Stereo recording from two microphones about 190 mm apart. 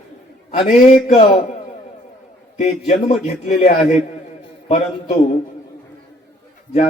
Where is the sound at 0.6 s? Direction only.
35° left (ahead or behind).